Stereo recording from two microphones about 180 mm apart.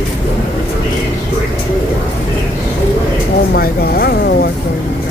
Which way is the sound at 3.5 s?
55° left (ahead or behind).